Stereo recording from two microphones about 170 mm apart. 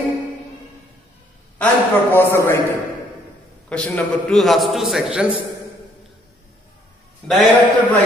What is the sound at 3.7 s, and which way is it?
A man's voice, 5° left (ahead or behind).